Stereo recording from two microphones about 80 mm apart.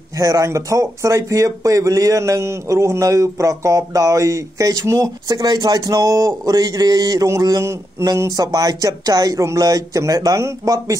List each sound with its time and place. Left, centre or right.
0.2 s speech: right